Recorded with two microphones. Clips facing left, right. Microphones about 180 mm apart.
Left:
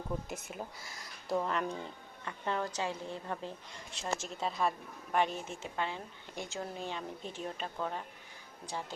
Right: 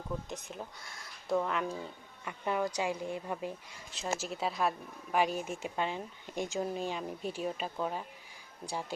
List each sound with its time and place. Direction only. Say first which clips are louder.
0.3 s speech: even; 5° left (ahead or behind)